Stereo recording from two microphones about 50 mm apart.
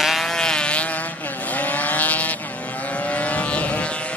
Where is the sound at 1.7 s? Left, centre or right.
Left.